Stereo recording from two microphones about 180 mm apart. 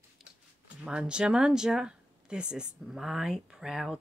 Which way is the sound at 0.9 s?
5° right (ahead or behind).